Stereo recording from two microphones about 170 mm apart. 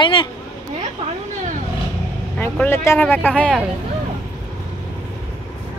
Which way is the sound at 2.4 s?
15° left (ahead or behind).